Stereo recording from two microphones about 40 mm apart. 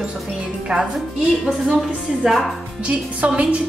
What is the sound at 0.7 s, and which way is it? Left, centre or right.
Speech, centre.